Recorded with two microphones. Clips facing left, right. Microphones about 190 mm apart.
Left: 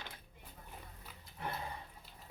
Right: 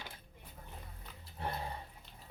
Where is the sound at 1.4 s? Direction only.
30° right (ahead or behind).